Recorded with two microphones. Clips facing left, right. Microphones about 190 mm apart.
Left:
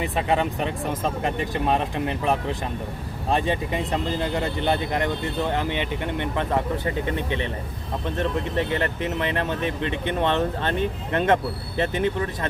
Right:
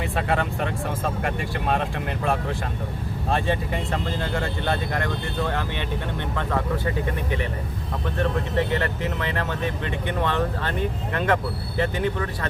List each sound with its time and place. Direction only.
0.0 s speech: 20° left (ahead or behind)
8.2 s speech: 20° left (ahead or behind)